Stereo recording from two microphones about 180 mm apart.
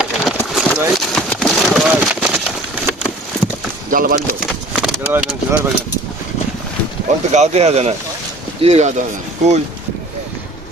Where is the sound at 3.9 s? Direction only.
50° right (ahead or behind).